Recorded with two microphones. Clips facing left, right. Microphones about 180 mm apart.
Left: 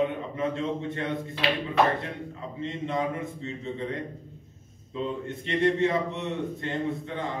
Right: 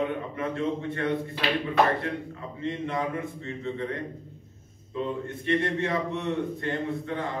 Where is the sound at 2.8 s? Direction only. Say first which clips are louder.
Left 3 dB; 20° left (ahead or behind).